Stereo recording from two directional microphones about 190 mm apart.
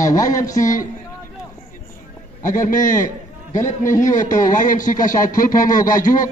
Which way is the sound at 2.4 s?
45° left (ahead or behind).